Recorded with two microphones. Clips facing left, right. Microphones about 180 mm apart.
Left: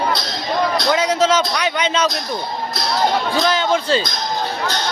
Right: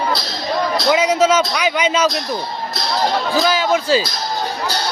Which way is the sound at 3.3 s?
5° right (ahead or behind).